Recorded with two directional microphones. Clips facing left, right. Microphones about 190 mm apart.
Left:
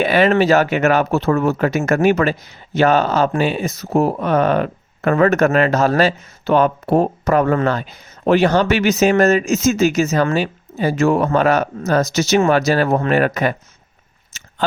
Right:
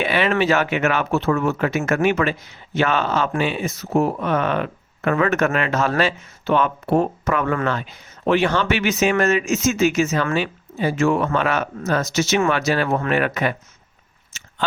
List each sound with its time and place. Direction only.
0.0 s speech: 40° left (ahead or behind)
14.3 s biting: 40° left (ahead or behind)